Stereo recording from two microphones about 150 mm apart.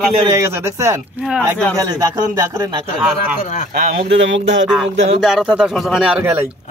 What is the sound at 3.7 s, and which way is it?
Speech, 90° right.